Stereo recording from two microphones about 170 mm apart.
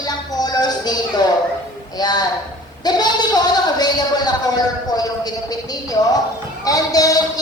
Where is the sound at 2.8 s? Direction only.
25° left (ahead or behind).